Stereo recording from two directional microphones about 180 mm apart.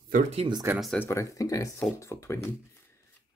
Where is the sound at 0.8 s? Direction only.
Centre (ahead or behind).